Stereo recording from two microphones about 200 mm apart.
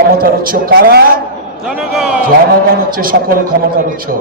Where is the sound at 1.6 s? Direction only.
5° right (ahead or behind).